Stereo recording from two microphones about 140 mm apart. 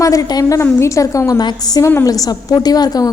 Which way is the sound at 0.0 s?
25° left (ahead or behind).